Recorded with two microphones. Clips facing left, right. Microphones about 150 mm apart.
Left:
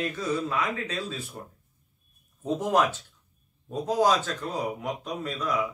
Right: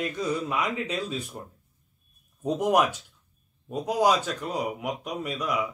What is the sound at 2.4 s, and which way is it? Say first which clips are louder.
Speech: right 1 dB; 15° right (ahead or behind).